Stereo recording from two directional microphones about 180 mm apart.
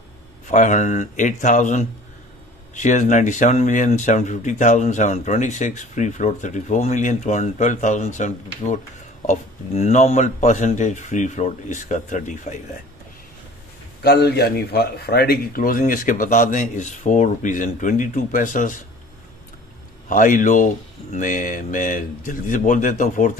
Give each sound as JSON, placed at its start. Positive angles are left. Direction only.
{"t": 0.5, "sound": "speech", "side_deg": 45}
{"t": 14.0, "sound": "speech", "side_deg": 65}
{"t": 20.1, "sound": "speech", "side_deg": 45}